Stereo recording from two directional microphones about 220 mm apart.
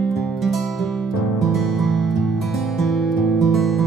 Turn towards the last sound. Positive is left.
turn(degrees=0)  # may be behind; listen again after turning